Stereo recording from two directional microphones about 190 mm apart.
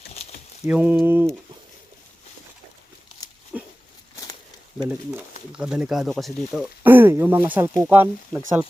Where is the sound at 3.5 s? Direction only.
10° right (ahead or behind).